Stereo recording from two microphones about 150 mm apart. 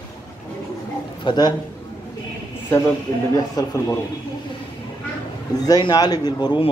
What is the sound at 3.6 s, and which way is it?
Speech, 25° left (ahead or behind).